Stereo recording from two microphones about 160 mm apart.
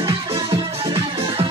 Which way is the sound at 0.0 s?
25° right (ahead or behind).